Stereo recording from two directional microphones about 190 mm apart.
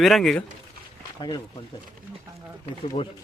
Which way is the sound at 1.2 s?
25° left (ahead or behind).